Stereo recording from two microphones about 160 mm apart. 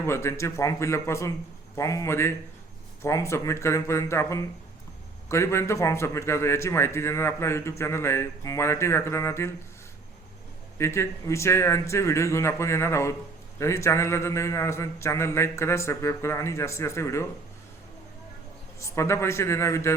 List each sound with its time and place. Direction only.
0.0 s a man's voice: 15° left (ahead or behind)
10.8 s a man's voice: 15° left (ahead or behind)
18.8 s a man's voice: 20° left (ahead or behind)